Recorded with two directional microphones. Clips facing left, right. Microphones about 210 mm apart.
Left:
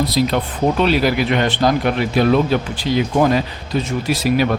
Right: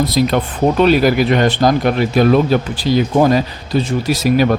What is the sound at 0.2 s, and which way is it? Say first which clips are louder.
Speech: right 3 dB; 55° right (ahead or behind).